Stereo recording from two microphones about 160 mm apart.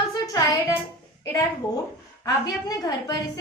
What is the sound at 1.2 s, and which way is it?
A woman's voice, 15° left (ahead or behind).